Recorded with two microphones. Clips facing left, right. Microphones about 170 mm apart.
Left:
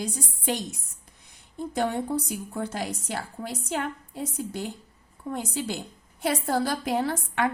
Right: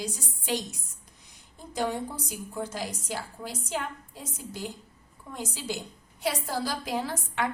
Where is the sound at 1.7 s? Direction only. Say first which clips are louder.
Left 4 dB; 60° left (ahead or behind).